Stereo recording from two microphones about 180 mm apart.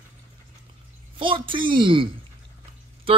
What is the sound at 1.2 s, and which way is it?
Speech, 30° right (ahead or behind).